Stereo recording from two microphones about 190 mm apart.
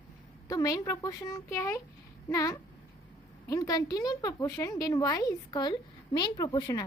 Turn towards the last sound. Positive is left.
turn(degrees=20)  # may be behind; listen again after turning